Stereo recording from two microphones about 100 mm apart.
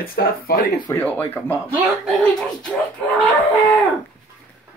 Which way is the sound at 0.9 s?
15° left (ahead or behind).